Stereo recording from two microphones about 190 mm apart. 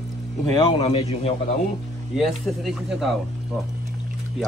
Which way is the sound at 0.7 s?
30° left (ahead or behind).